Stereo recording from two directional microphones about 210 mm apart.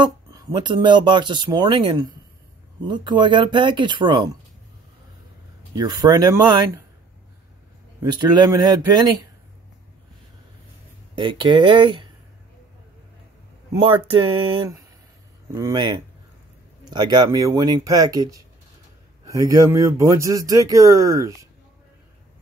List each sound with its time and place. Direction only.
0.0 s speech: 20° right (ahead or behind)
5.8 s speech: 20° right (ahead or behind)
8.0 s speech: 20° right (ahead or behind)
11.1 s speech: 25° right (ahead or behind)
13.7 s speech: 25° right (ahead or behind)